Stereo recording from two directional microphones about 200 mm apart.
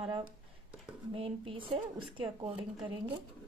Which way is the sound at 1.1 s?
25° right (ahead or behind).